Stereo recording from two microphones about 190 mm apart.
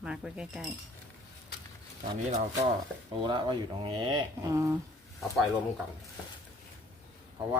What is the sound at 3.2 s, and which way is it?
Speech, 25° right (ahead or behind).